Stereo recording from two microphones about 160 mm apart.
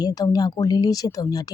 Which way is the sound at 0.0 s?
25° left (ahead or behind).